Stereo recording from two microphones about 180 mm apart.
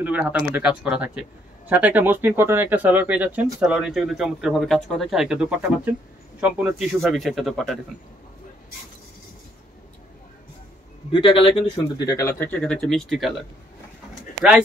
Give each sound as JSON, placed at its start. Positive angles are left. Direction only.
{"t": 0.0, "sound": "speech", "side_deg": -10}
{"t": 11.1, "sound": "speech", "side_deg": 30}